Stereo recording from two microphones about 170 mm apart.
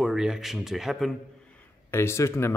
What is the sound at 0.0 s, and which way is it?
Speech, 5° right (ahead or behind).